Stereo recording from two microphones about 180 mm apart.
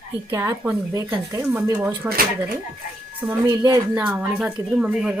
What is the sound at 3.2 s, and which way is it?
Speech, 15° right (ahead or behind).